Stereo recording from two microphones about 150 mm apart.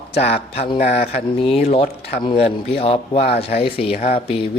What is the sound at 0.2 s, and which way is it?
Speech, 45° left (ahead or behind).